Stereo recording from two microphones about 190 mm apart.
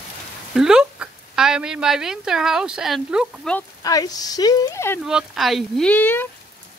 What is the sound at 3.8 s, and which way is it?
Speech, 20° left (ahead or behind).